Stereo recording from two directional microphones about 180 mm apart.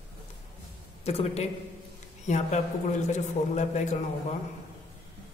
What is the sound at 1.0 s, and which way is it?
A woman's voice, 35° left (ahead or behind).